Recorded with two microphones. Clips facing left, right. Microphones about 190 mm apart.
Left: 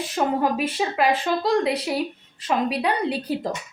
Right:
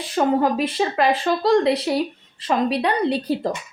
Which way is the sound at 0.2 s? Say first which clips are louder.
Right 4 dB; 5° left (ahead or behind).